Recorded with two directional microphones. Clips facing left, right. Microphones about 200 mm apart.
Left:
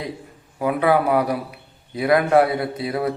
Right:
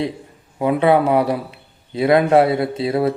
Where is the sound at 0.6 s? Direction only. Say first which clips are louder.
Right 3 dB; 25° right (ahead or behind).